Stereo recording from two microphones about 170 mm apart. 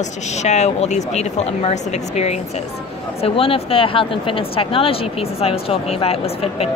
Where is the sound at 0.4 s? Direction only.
40° left (ahead or behind).